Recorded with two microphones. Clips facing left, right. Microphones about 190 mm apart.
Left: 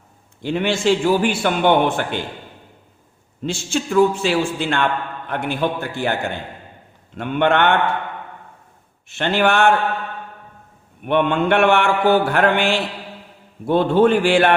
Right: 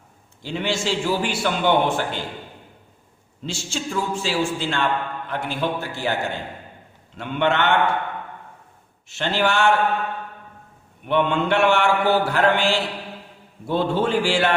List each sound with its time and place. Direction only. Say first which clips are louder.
0.4 s a man's voice: left 6 dB; 60° left (ahead or behind)
3.4 s a man's voice: left 6 dB; 55° left (ahead or behind)
7.2 s a man's voice: left 4 dB; 55° left (ahead or behind)
9.0 s a man's voice: left 4 dB; 55° left (ahead or behind)
11.0 s a man's voice: left 3 dB; 55° left (ahead or behind)